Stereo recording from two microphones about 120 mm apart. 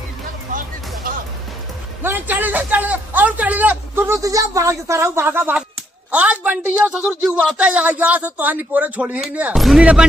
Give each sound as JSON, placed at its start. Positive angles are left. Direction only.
{"t": 2.0, "sound": "a man's voice", "side_deg": -15}